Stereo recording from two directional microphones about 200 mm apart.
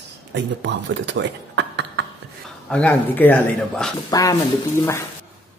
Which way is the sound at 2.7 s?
10° left (ahead or behind).